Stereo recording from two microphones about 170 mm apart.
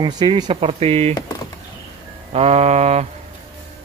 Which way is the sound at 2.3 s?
35° right (ahead or behind).